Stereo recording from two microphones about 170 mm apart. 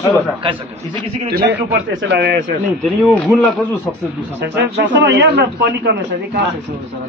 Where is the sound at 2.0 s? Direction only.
85° right.